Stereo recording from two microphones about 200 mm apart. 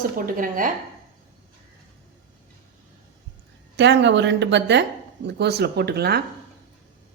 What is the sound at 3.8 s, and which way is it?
Speech, 60° right (ahead or behind).